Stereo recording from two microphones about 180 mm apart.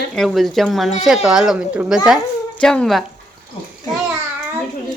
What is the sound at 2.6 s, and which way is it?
Speech, 5° left (ahead or behind).